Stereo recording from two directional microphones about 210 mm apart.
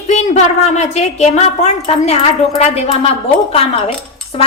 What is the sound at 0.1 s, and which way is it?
A woman's voice, 30° left (ahead or behind).